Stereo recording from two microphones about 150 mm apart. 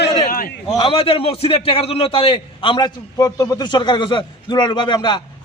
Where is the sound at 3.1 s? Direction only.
20° left (ahead or behind).